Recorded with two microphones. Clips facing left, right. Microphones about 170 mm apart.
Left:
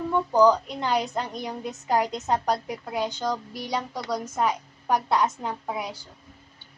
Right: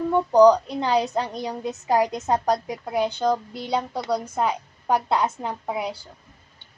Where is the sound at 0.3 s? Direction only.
20° right (ahead or behind).